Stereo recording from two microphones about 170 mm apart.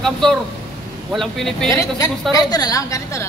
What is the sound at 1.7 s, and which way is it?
A woman's voice, 15° left (ahead or behind).